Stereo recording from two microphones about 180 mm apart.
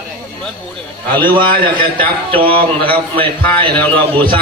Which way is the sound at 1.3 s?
25° right (ahead or behind).